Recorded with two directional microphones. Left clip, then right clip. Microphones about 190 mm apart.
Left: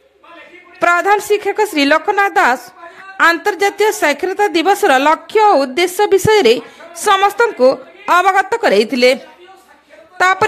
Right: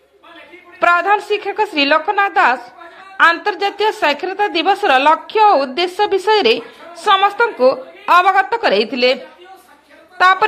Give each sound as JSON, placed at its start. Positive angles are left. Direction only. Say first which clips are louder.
{"t": 0.7, "sound": "a woman's voice", "louder": "left 1 dB", "side_deg": 45}